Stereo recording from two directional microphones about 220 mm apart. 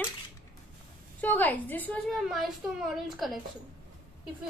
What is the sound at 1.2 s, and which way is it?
A woman's voice, 10° left (ahead or behind).